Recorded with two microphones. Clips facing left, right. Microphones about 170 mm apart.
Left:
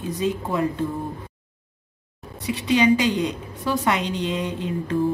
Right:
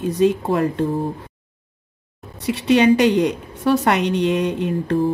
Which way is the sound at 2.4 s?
65° right (ahead or behind).